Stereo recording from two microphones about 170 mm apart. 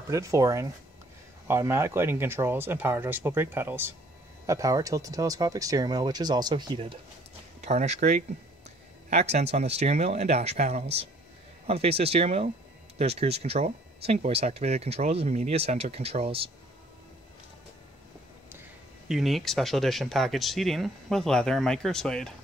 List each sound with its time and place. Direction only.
0.1 s speech: 20° right (ahead or behind)
7.6 s speech: 40° right (ahead or behind)
19.0 s speech: centre (ahead or behind)